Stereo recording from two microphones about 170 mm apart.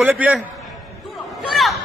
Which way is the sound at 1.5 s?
Centre (ahead or behind).